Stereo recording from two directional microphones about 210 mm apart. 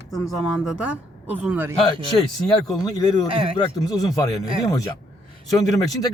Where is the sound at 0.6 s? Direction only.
5° right (ahead or behind).